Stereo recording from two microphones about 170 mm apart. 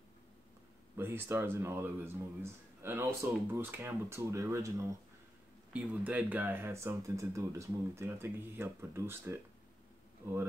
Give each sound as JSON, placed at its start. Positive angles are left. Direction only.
{"t": 0.9, "sound": "speech", "side_deg": -15}